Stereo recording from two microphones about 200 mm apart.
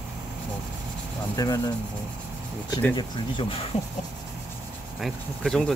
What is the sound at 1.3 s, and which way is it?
Speech, 15° left (ahead or behind).